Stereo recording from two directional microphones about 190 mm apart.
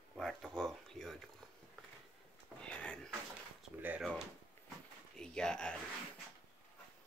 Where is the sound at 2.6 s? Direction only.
5° left (ahead or behind).